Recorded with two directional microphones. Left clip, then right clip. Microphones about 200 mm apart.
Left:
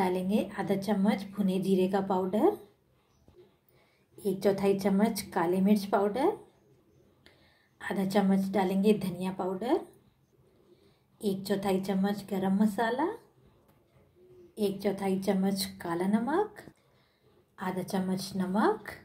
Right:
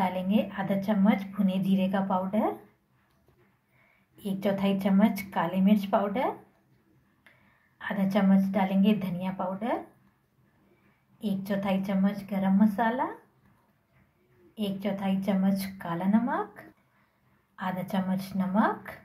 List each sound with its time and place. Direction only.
0.0 s a sound: 50° left (ahead or behind)
0.8 s a woman's voice: 45° left (ahead or behind)
4.2 s a woman's voice: 45° left (ahead or behind)
7.8 s a woman's voice: 50° left (ahead or behind)
11.2 s a woman's voice: 50° left (ahead or behind)
14.5 s a woman's voice: 50° left (ahead or behind)
17.6 s a woman's voice: 50° left (ahead or behind)